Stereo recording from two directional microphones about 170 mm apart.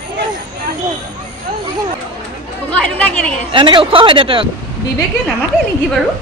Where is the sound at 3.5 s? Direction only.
30° right (ahead or behind).